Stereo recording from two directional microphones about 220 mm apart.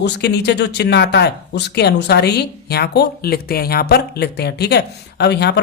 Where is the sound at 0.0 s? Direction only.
50° left (ahead or behind).